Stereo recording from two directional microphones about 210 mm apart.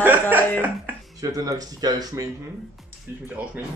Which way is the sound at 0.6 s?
10° right (ahead or behind).